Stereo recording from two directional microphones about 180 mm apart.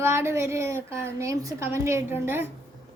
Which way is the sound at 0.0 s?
15° right (ahead or behind).